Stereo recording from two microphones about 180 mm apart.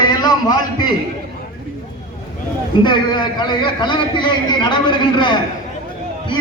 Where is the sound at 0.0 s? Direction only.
25° left (ahead or behind).